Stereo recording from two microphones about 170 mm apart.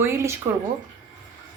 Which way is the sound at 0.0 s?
15° right (ahead or behind).